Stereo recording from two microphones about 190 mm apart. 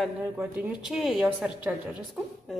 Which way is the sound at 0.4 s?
5° right (ahead or behind).